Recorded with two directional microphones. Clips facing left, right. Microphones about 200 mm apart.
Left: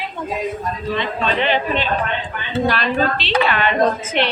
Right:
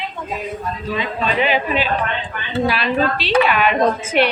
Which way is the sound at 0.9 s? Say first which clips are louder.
Right 1 dB; 5° right (ahead or behind).